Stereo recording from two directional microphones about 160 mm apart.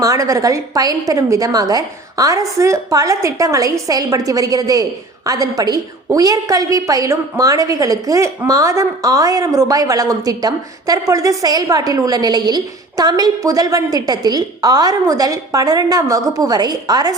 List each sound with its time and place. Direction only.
0.0 s a woman's voice: 20° right (ahead or behind)